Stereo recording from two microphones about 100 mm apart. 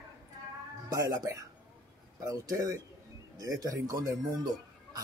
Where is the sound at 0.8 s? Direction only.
35° right (ahead or behind).